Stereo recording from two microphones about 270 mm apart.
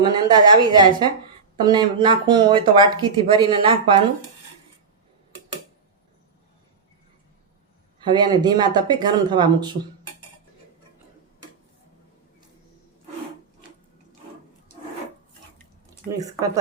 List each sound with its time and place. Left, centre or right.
0.0 s speech: centre
8.0 s speech: centre
16.1 s speech: centre